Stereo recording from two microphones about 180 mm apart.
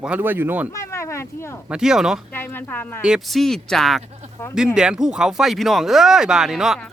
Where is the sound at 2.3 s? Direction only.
10° left (ahead or behind).